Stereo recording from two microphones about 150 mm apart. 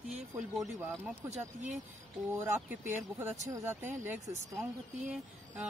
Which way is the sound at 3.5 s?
20° right (ahead or behind).